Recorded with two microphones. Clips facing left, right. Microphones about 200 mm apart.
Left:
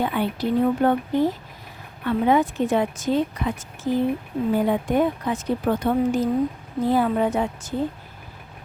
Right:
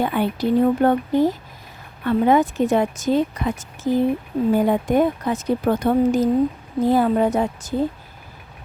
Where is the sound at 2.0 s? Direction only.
45° right (ahead or behind).